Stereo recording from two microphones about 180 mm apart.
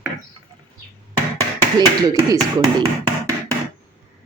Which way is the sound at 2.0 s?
20° right (ahead or behind).